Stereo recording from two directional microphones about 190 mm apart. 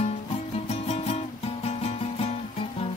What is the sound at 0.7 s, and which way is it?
Music, 35° left (ahead or behind).